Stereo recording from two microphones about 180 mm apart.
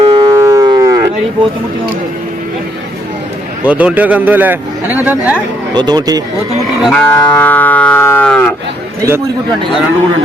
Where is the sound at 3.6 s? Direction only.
10° right (ahead or behind).